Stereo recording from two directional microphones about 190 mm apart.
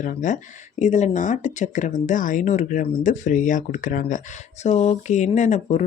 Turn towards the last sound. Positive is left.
turn(degrees=40)  # may be behind; listen again after turning